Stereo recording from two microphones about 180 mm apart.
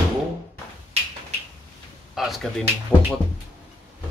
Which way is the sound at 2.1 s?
Centre (ahead or behind).